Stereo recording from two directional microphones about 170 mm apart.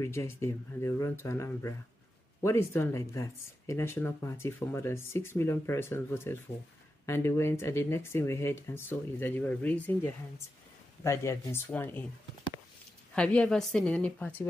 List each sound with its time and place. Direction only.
0.0 s speech: 15° left (ahead or behind)
13.1 s speech: 5° left (ahead or behind)